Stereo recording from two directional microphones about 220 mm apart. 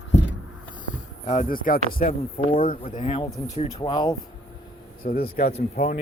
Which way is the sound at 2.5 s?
25° left (ahead or behind).